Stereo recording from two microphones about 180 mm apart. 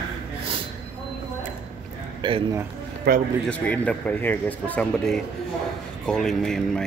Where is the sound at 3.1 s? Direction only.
65° right (ahead or behind).